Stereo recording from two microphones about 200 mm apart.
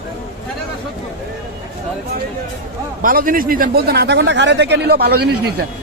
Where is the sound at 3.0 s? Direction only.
45° right (ahead or behind).